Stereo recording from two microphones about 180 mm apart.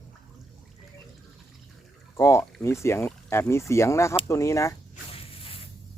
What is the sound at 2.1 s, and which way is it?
Speech, 15° left (ahead or behind).